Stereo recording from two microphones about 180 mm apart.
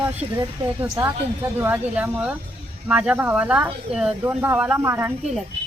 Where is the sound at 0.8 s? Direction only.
15° right (ahead or behind).